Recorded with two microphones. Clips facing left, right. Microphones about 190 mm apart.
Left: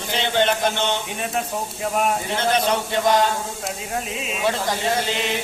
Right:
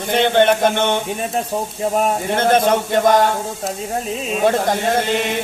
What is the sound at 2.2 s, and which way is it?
Speech, 50° right (ahead or behind).